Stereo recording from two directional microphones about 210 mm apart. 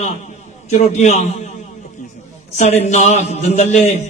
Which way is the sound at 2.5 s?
35° left (ahead or behind).